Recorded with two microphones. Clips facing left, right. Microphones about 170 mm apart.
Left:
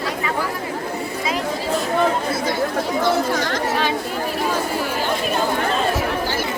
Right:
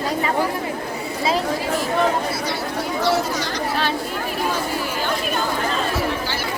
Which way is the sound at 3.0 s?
50° left (ahead or behind).